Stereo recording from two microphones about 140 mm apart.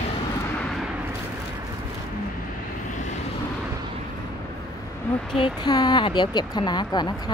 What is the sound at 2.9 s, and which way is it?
Vehicle, 55° left (ahead or behind).